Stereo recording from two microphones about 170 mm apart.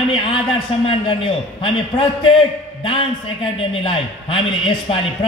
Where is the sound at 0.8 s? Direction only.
35° left (ahead or behind).